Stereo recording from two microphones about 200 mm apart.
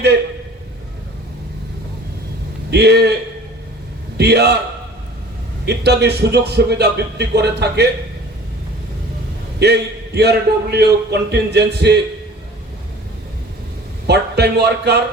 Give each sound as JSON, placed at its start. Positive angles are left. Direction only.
{"t": 2.6, "sound": "a man's voice", "side_deg": -55}
{"t": 4.2, "sound": "a man's voice", "side_deg": -55}
{"t": 5.6, "sound": "a man's voice", "side_deg": -55}
{"t": 9.6, "sound": "a man's voice", "side_deg": -55}
{"t": 14.1, "sound": "a man's voice", "side_deg": -55}